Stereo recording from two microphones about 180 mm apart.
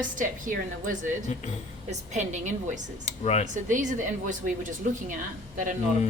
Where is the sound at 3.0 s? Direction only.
35° left (ahead or behind).